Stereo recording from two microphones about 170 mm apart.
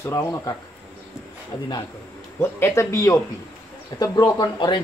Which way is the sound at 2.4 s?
15° left (ahead or behind).